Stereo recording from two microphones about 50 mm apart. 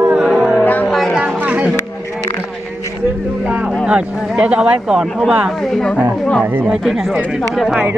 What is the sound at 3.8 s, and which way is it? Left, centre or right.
Speech, centre.